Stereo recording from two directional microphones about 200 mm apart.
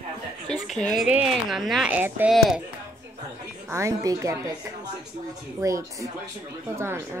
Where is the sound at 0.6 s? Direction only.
Centre (ahead or behind).